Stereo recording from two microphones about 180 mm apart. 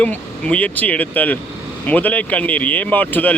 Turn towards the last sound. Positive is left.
turn(degrees=10)  # may be behind; listen again after turning